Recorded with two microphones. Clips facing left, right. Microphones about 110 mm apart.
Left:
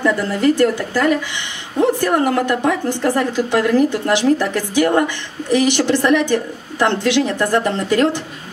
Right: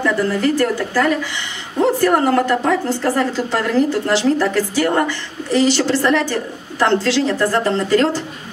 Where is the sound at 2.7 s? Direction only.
15° left (ahead or behind).